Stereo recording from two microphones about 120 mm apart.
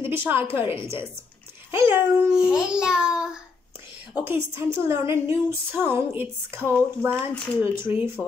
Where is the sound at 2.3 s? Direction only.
5° right (ahead or behind).